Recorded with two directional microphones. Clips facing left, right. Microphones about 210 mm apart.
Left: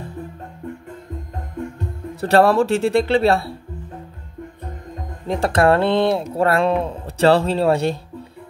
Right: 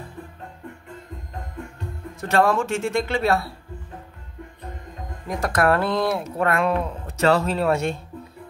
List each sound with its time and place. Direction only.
2.1 s speech: 35° left (ahead or behind)
5.3 s speech: 30° left (ahead or behind)